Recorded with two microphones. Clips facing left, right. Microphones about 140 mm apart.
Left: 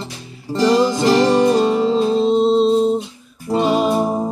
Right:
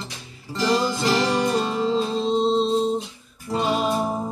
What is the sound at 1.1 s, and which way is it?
Music, 25° left (ahead or behind).